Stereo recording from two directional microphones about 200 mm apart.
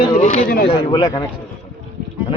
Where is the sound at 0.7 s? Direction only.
25° left (ahead or behind).